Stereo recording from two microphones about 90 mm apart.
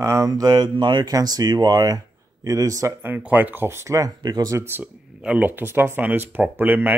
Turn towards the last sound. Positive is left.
turn(degrees=-20)  # may be behind; listen again after turning